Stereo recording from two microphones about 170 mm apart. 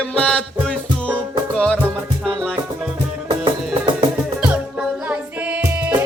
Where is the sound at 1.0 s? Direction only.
10° right (ahead or behind).